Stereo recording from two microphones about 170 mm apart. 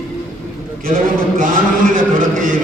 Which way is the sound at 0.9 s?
55° right (ahead or behind).